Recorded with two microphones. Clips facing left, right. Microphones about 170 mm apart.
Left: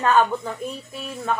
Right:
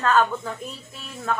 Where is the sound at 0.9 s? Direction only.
10° left (ahead or behind).